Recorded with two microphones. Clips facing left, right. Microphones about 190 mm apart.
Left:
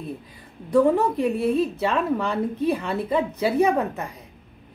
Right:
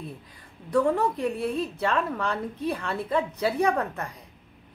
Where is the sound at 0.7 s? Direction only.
5° left (ahead or behind).